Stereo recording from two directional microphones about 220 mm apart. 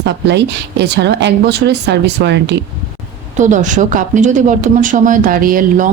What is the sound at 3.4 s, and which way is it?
A woman's voice, 35° right (ahead or behind).